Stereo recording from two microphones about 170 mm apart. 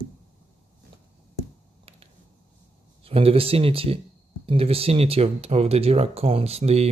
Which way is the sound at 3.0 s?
35° right (ahead or behind).